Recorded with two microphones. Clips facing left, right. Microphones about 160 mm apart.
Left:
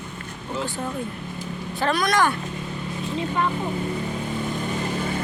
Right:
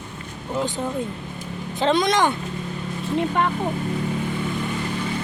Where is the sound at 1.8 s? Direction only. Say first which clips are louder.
Right 2 dB; 20° right (ahead or behind).